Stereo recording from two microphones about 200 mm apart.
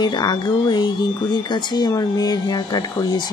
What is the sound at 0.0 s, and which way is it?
Speech, 20° left (ahead or behind).